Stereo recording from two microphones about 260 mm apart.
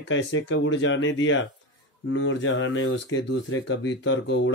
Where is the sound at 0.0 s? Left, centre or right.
Left.